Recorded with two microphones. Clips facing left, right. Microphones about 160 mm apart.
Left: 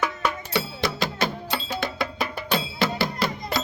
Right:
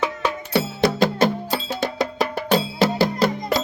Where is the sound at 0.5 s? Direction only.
50° right (ahead or behind).